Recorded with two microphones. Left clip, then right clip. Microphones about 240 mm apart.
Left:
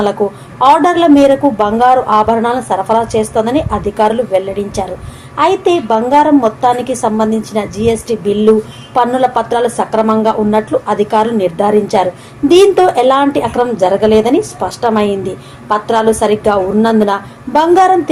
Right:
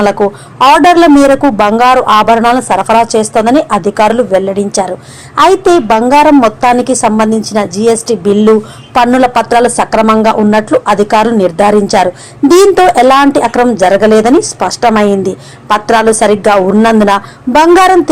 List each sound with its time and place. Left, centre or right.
0.6 s a woman's voice: right